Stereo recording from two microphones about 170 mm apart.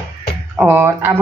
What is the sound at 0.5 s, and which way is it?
Speech, 10° right (ahead or behind).